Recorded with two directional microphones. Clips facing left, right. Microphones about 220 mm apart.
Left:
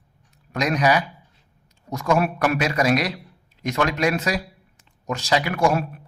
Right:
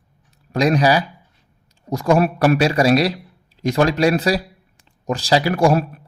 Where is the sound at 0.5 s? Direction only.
30° right (ahead or behind).